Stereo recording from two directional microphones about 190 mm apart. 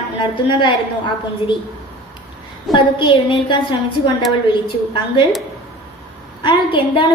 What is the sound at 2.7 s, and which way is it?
A woman's voice, 25° left (ahead or behind).